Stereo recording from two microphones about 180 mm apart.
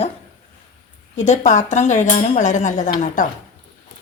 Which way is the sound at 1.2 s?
40° left (ahead or behind).